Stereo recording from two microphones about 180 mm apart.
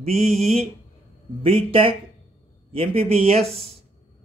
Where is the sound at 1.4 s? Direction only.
30° right (ahead or behind).